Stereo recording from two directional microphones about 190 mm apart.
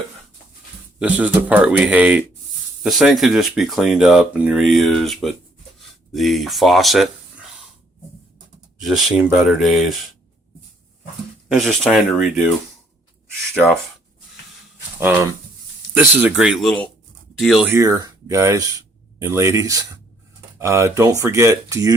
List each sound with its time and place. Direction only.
0.9 s speech: 5° right (ahead or behind)
8.8 s speech: centre (ahead or behind)
11.4 s speech: centre (ahead or behind)
13.5 s speech: 10° left (ahead or behind)
14.9 s speech: 10° right (ahead or behind)
16.2 s speech: 5° right (ahead or behind)
17.7 s speech: 15° right (ahead or behind)